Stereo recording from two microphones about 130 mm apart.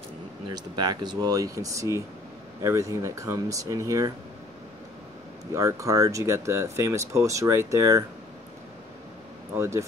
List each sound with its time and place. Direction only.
0.5 s speech: 35° right (ahead or behind)
5.5 s speech: 25° right (ahead or behind)
9.6 s speech: 20° right (ahead or behind)